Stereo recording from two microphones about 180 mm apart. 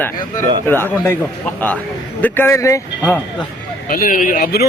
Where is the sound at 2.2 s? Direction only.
15° left (ahead or behind).